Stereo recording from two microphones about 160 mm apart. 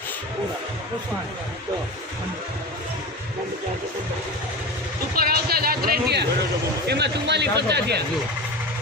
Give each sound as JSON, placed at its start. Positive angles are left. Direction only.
{"t": 5.1, "sound": "speech", "side_deg": -70}